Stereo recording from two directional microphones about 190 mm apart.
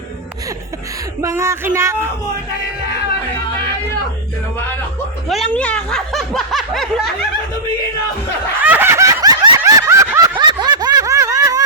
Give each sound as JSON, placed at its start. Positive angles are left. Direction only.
{"t": 1.2, "sound": "speech", "side_deg": -15}
{"t": 5.3, "sound": "speech", "side_deg": 5}
{"t": 8.6, "sound": "snicker", "side_deg": -10}